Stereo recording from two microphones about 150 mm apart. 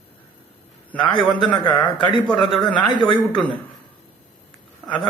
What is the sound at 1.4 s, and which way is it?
Speech, 30° left (ahead or behind).